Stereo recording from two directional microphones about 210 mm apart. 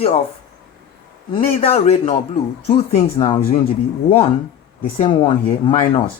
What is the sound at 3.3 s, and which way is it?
Speech, 45° left (ahead or behind).